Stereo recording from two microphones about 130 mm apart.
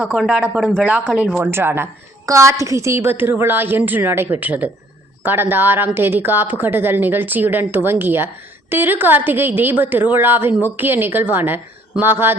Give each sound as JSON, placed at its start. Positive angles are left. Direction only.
{"t": 0.0, "sound": "a woman's voice", "side_deg": -10}
{"t": 0.6, "sound": "speech", "side_deg": 5}
{"t": 1.4, "sound": "a woman's voice", "side_deg": -15}